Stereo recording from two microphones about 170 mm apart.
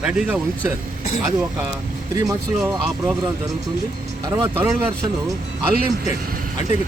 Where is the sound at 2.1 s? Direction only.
20° right (ahead or behind).